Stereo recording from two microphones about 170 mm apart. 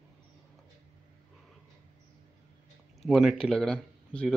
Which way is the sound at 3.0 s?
Centre (ahead or behind).